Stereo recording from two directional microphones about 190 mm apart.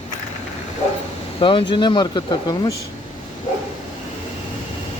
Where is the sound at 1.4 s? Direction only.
25° left (ahead or behind).